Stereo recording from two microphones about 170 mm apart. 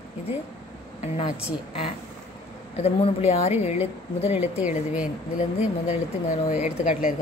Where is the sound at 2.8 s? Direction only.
35° left (ahead or behind).